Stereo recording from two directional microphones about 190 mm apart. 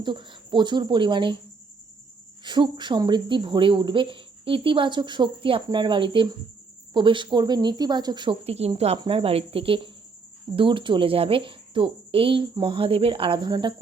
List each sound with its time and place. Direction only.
0.0 s speech: 25° right (ahead or behind)
2.4 s speech: 25° right (ahead or behind)